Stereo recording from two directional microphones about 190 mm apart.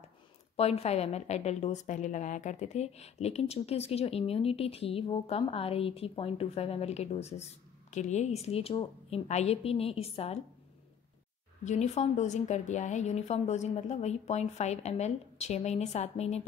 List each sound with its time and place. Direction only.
0.6 s a woman's voice: 35° left (ahead or behind)
11.6 s a woman's voice: 35° left (ahead or behind)